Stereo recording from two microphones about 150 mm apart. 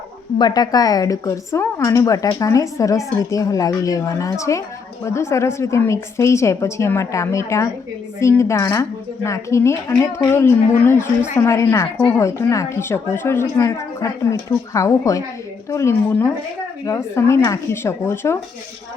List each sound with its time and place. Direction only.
0.3 s a woman's voice: 25° left (ahead or behind)